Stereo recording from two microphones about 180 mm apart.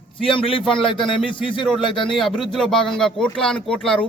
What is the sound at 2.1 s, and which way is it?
Speech, centre (ahead or behind).